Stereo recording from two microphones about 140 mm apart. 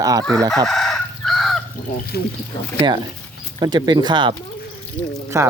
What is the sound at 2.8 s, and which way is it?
Speech, 30° right (ahead or behind).